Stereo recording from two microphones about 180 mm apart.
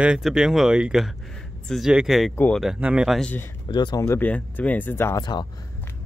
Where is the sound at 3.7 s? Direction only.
25° left (ahead or behind).